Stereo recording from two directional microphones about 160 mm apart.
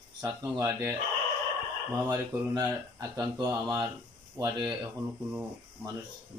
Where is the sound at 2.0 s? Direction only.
25° right (ahead or behind).